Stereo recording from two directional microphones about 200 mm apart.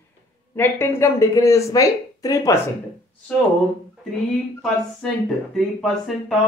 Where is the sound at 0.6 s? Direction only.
10° left (ahead or behind).